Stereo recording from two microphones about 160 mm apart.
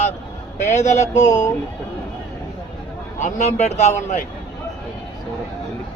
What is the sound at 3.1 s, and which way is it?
A man's voice, 45° left (ahead or behind).